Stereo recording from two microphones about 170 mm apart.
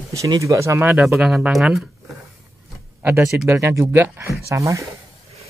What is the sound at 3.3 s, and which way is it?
Speech, 15° right (ahead or behind).